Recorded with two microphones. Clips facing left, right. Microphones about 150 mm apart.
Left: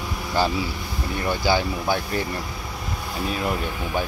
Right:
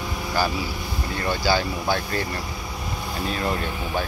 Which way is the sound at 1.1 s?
15° left (ahead or behind).